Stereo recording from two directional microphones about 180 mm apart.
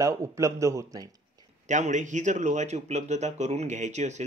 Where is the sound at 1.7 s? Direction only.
40° right (ahead or behind).